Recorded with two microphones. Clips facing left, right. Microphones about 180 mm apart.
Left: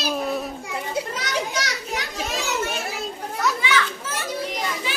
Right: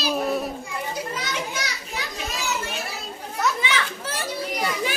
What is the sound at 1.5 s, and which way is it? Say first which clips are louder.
Children playing: left 4 dB; 75° left (ahead or behind).